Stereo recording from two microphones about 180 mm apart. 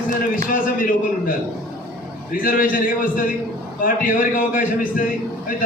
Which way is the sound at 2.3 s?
50° left (ahead or behind).